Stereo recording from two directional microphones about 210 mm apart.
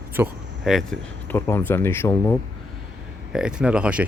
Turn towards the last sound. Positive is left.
turn(degrees=-5)  # may be behind; listen again after turning